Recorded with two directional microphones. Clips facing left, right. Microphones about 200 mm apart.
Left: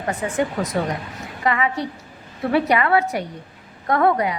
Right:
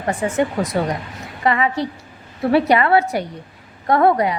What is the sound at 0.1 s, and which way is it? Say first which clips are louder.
A woman's voice: right 3 dB; 30° right (ahead or behind).